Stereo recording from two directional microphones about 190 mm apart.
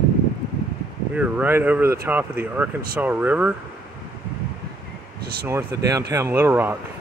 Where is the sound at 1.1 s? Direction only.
10° right (ahead or behind).